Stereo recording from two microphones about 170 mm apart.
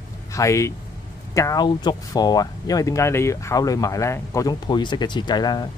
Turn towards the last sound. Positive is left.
turn(degrees=25)  # may be behind; listen again after turning